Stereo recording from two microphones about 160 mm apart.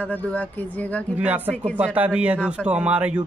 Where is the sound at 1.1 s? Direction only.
10° right (ahead or behind).